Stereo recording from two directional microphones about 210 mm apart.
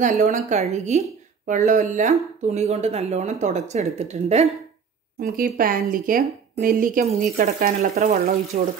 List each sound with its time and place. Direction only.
0.0 s a woman's voice: 35° right (ahead or behind)
5.2 s a woman's voice: 45° right (ahead or behind)